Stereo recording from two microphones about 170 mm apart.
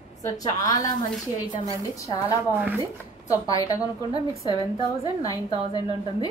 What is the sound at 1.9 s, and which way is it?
Speech, 20° left (ahead or behind).